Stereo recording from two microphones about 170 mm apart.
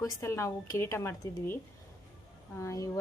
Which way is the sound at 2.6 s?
20° left (ahead or behind).